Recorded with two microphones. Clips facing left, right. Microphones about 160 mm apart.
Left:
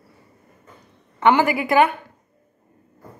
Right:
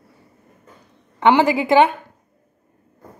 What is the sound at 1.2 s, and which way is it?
Speech, 20° right (ahead or behind).